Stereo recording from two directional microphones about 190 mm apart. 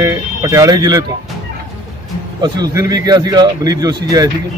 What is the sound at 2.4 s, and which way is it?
A man's voice, 20° right (ahead or behind).